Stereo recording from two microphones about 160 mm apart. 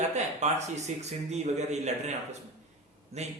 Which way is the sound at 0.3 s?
45° right (ahead or behind).